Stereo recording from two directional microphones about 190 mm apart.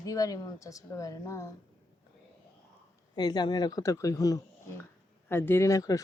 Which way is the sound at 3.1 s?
20° left (ahead or behind).